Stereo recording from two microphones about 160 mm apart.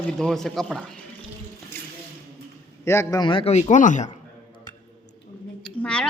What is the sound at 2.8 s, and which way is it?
A man's voice, 15° left (ahead or behind).